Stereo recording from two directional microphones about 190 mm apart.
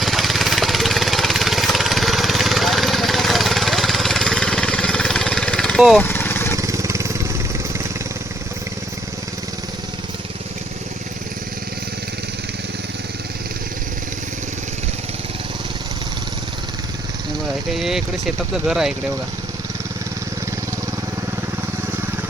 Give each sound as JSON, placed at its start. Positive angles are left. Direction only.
{"t": 0.0, "sound": "lawn mower", "side_deg": 0}
{"t": 6.0, "sound": "vehicle", "side_deg": 10}
{"t": 6.6, "sound": "vehicle", "side_deg": -15}
{"t": 17.7, "sound": "speech", "side_deg": 0}